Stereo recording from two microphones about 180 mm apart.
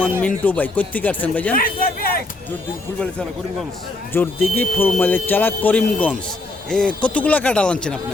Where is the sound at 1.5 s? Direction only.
55° left (ahead or behind).